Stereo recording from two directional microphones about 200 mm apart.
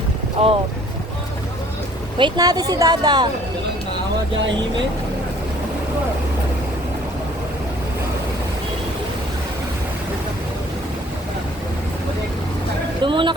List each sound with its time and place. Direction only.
0.4 s speech: 30° right (ahead or behind)
2.1 s speech: 20° right (ahead or behind)
13.0 s speech: 25° right (ahead or behind)